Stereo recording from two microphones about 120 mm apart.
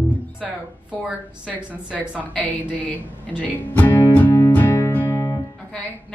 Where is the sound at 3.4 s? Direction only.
15° left (ahead or behind).